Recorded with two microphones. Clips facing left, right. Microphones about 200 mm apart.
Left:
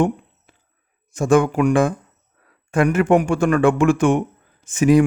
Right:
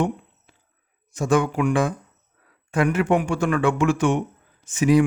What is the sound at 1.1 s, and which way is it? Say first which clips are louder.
Speech: left 5 dB; 50° left (ahead or behind).